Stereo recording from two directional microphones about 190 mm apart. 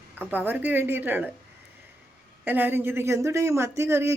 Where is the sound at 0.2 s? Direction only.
10° right (ahead or behind).